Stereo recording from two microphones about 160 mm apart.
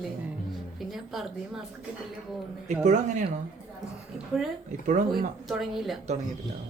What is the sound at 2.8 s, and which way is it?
Speech, 50° right (ahead or behind).